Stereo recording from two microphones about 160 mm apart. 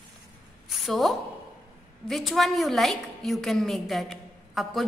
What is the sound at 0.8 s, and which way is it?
A woman's voice, centre (ahead or behind).